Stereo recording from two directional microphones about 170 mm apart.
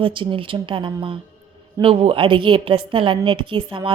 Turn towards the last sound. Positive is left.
turn(degrees=-30)  # may be behind; listen again after turning